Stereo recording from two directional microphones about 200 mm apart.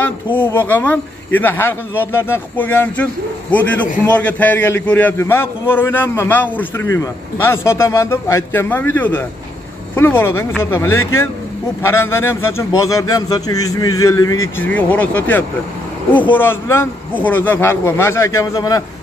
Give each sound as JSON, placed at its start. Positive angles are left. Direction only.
{"t": 0.0, "sound": "a man's voice", "side_deg": 10}